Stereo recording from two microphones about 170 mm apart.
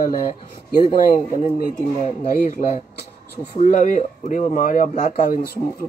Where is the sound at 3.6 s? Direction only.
50° left (ahead or behind).